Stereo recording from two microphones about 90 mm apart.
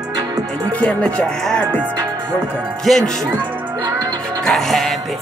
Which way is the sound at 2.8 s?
5° left (ahead or behind).